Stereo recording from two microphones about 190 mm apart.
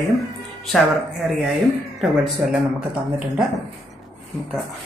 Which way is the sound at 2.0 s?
Centre (ahead or behind).